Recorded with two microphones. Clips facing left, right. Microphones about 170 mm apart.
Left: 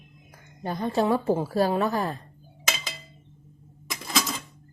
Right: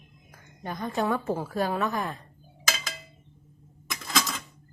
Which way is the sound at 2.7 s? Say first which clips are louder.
Left 1 dB; 25° left (ahead or behind).